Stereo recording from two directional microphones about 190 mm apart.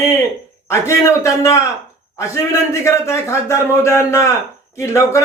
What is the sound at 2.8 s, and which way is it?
Speech, 15° left (ahead or behind).